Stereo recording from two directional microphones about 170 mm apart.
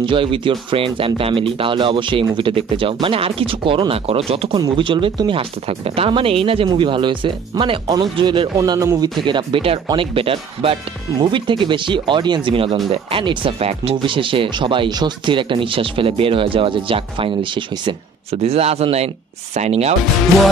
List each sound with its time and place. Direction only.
0.0 s speech: 30° right (ahead or behind)